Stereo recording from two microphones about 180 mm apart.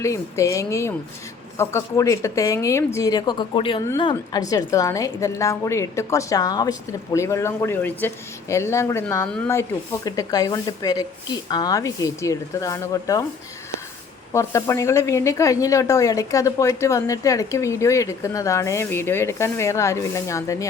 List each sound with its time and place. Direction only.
0.0 s a woman's voice: 15° left (ahead or behind)
14.3 s a woman's voice: 15° left (ahead or behind)